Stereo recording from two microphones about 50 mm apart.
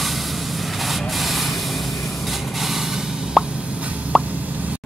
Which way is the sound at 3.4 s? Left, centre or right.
Centre.